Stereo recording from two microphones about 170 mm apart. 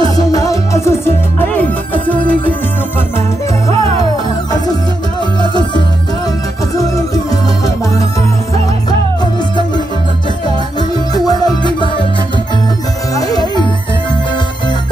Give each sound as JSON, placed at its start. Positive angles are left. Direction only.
{"t": 0.0, "sound": "music", "side_deg": 20}
{"t": 11.2, "sound": "music", "side_deg": 25}
{"t": 13.1, "sound": "music", "side_deg": 25}